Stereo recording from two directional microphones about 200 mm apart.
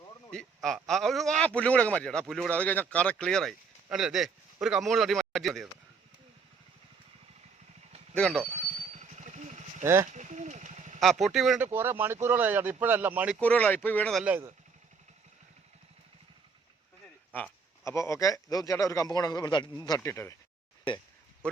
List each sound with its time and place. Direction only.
0.3 s speech: 5° left (ahead or behind)
8.1 s speech: 5° left (ahead or behind)
8.5 s vehicle: 35° right (ahead or behind)
9.8 s speech: 15° right (ahead or behind)
10.1 s a sound: 35° right (ahead or behind)
11.0 s speech: centre (ahead or behind)
13.4 s speech: 5° left (ahead or behind); by 14.5 s 10° right (ahead or behind)
17.3 s speech: 10° left (ahead or behind)